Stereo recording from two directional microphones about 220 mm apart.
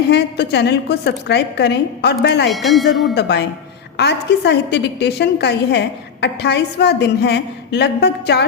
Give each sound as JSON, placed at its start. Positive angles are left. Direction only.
{"t": 0.1, "sound": "a woman's voice", "side_deg": 50}
{"t": 2.5, "sound": "speech", "side_deg": 0}
{"t": 3.2, "sound": "a woman's voice", "side_deg": 50}